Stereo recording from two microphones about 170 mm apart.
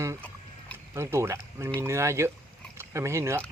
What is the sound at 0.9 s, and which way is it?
Speech, 15° right (ahead or behind).